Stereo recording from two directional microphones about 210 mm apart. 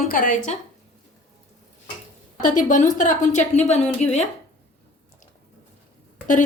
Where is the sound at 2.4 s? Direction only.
40° left (ahead or behind).